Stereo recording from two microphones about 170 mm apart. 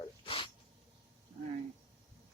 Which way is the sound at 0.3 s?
30° left (ahead or behind).